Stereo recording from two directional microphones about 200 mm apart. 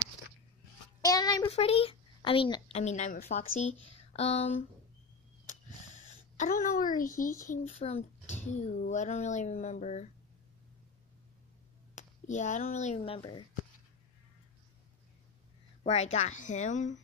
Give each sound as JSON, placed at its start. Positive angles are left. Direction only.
{"t": 1.0, "sound": "a sound", "side_deg": 20}
{"t": 1.5, "sound": "a child's voice", "side_deg": 30}
{"t": 6.3, "sound": "a child's voice", "side_deg": 40}
{"t": 11.9, "sound": "speech", "side_deg": 35}
{"t": 15.8, "sound": "a child's voice", "side_deg": 30}